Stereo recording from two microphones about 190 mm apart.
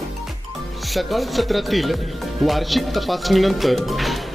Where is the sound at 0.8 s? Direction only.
Centre (ahead or behind).